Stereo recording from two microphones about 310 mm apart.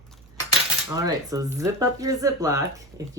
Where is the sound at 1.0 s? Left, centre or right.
Centre.